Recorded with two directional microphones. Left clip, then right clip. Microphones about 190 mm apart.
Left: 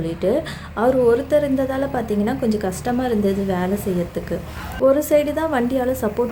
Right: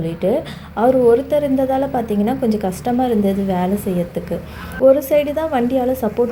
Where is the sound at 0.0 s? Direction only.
Centre (ahead or behind).